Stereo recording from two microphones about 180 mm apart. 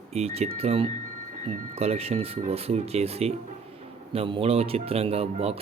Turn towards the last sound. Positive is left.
turn(degrees=-35)  # may be behind; listen again after turning